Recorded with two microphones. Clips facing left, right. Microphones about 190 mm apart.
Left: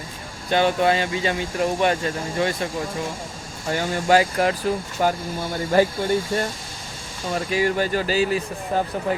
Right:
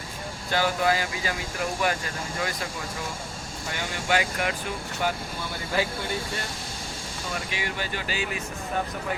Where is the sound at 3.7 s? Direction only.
40° left (ahead or behind).